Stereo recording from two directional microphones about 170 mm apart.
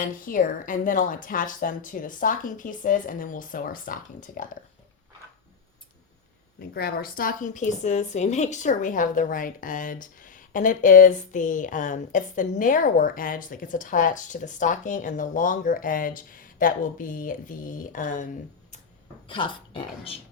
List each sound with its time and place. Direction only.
0.0 s a woman's voice: 55° left (ahead or behind)
6.6 s a woman's voice: 65° left (ahead or behind); by 18.3 s 50° left (ahead or behind)
19.3 s speech: 30° left (ahead or behind)